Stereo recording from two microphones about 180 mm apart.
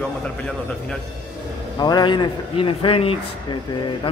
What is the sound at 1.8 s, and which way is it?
A man's voice, 25° left (ahead or behind).